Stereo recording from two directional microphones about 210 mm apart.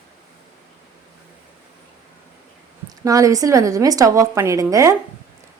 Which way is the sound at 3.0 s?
15° right (ahead or behind).